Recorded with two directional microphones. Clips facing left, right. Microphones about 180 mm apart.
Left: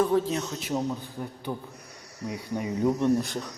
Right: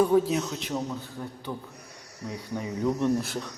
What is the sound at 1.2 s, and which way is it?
Speech, 10° left (ahead or behind).